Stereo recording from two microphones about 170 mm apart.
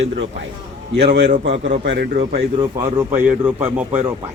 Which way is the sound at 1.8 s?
90° right.